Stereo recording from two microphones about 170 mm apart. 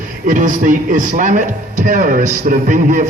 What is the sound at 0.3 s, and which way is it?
A man's voice, 50° right (ahead or behind).